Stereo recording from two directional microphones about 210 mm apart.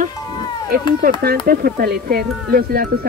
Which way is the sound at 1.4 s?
45° right (ahead or behind).